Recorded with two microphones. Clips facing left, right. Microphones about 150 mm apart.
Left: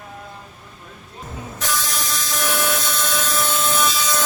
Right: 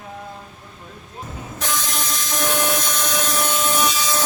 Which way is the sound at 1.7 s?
20° right (ahead or behind).